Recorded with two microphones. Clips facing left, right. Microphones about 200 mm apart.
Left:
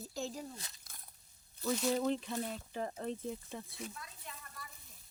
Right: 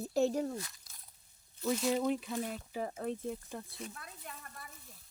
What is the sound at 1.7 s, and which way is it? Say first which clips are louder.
Speech: right 2 dB; 5° right (ahead or behind).